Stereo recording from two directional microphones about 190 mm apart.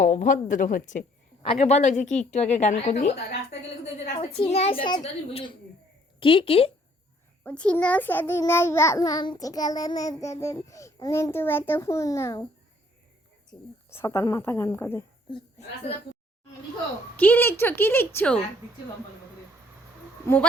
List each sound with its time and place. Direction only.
0.0 s a woman's voice: 45° left (ahead or behind)
4.2 s a woman's voice: 30° left (ahead or behind)
7.4 s a child's voice: 5° left (ahead or behind)
13.5 s a child's voice: 15° left (ahead or behind)
17.2 s a child's voice: 10° left (ahead or behind)
20.2 s a child's voice: 10° left (ahead or behind)